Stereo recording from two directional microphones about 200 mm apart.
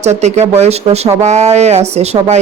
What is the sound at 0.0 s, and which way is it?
Speech, 35° right (ahead or behind).